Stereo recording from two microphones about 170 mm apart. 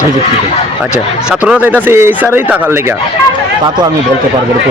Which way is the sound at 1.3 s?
5° right (ahead or behind).